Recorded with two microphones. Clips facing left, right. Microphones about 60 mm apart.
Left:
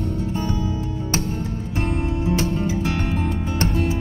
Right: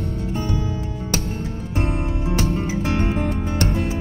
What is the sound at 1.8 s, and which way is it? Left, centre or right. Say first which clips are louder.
Music: left 1 dB; right.